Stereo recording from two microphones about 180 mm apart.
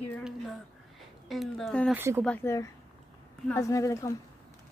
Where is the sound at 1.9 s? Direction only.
10° right (ahead or behind).